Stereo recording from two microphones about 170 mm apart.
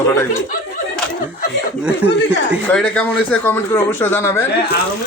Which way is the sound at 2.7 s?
5° left (ahead or behind).